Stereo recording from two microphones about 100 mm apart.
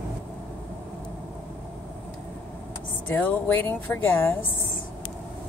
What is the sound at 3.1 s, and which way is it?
Speech, 20° left (ahead or behind).